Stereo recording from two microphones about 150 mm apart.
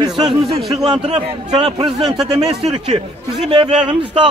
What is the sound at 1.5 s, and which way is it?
Speech, 30° right (ahead or behind).